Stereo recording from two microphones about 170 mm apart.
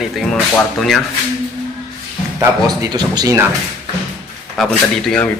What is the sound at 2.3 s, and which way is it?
Speech, 20° right (ahead or behind).